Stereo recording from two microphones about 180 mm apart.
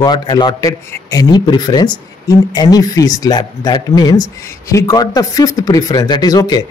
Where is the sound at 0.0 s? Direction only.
25° left (ahead or behind).